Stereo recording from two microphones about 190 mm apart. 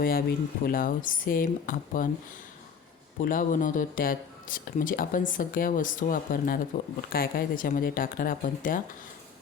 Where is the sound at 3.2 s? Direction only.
45° left (ahead or behind).